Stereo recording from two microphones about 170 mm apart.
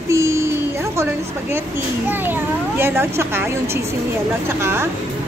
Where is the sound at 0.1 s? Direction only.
15° right (ahead or behind).